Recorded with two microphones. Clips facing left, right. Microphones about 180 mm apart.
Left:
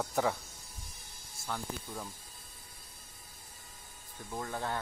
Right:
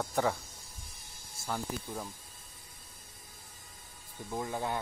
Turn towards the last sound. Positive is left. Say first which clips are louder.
# right 2 dB
turn(degrees=-15)  # may be behind; listen again after turning